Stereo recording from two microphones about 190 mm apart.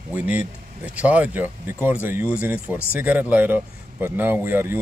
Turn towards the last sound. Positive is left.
turn(degrees=-10)  # may be behind; listen again after turning